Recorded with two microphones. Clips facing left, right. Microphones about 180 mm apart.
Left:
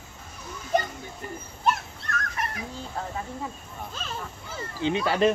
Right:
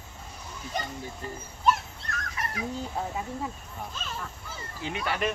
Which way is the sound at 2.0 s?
55° left (ahead or behind).